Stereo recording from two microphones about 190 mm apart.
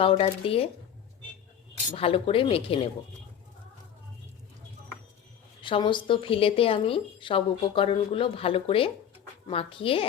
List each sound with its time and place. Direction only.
0.0 s speech: 30° left (ahead or behind)
1.9 s speech: 30° left (ahead or behind)
5.6 s speech: 25° left (ahead or behind)